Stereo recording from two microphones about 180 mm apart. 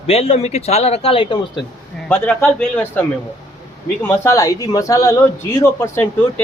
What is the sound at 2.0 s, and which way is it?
Speech, 5° left (ahead or behind).